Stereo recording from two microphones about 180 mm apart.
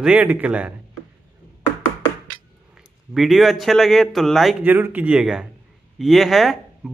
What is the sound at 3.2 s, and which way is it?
Speech, centre (ahead or behind).